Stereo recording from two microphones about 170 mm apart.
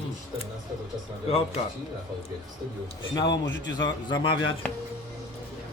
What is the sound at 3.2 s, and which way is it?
Speech, 90° left.